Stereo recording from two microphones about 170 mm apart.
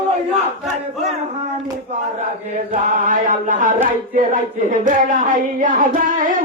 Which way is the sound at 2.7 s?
50° right (ahead or behind).